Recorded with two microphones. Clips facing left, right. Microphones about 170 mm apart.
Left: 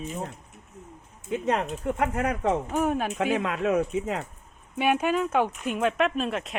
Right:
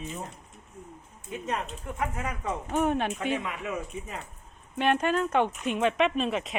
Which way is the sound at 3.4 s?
90° left.